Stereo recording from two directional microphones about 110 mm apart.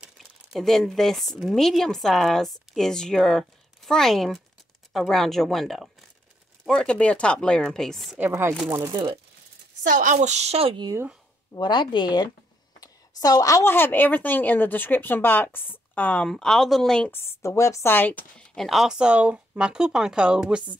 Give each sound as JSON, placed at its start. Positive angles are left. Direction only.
{"t": 0.2, "sound": "a woman's voice", "side_deg": 0}
{"t": 8.2, "sound": "speech", "side_deg": -25}
{"t": 8.6, "sound": "speech", "side_deg": -35}
{"t": 10.1, "sound": "a woman's voice", "side_deg": -90}
{"t": 11.5, "sound": "a woman's voice", "side_deg": 45}
{"t": 17.1, "sound": "speech", "side_deg": 25}
{"t": 18.6, "sound": "speech", "side_deg": 0}